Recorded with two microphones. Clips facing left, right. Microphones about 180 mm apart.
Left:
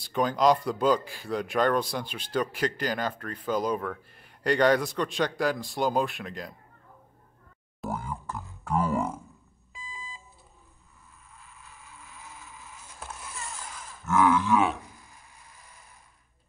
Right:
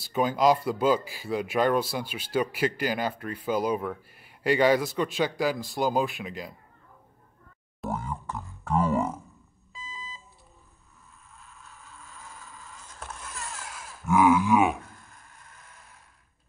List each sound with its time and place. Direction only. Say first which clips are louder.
0.0 s speech: right 1 dB; 5° right (ahead or behind)
7.8 s grunt: right 1 dB; centre (ahead or behind)
12.5 s vehicle: right 1 dB; 15° left (ahead or behind)
13.2 s wild animals: right 2 dB; centre (ahead or behind)
15.0 s vehicle: even; centre (ahead or behind)